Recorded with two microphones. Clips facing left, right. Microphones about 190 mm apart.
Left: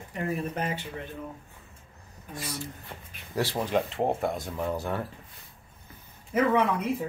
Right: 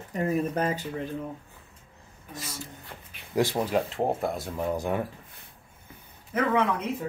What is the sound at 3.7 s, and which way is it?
Speech, centre (ahead or behind).